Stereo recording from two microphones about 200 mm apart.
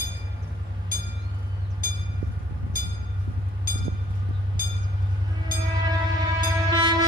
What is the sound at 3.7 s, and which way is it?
Train, 45° left (ahead or behind).